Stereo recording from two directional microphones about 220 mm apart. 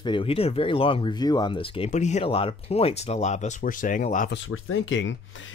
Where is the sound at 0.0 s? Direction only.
25° left (ahead or behind).